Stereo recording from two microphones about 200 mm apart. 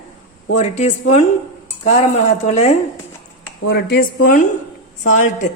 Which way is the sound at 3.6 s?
55° left (ahead or behind).